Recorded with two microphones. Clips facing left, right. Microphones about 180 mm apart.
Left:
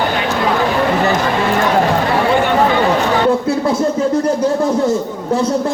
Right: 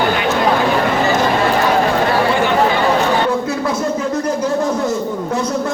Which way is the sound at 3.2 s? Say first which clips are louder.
Left 4 dB; 30° left (ahead or behind).